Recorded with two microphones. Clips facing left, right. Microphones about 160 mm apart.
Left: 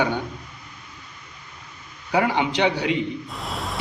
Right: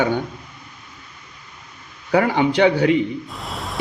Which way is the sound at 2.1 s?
50° right (ahead or behind).